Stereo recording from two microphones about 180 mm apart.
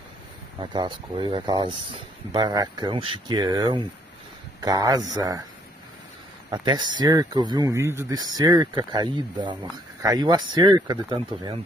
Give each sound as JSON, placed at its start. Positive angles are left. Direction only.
{"t": 0.6, "sound": "speech", "side_deg": -25}
{"t": 6.5, "sound": "speech", "side_deg": -25}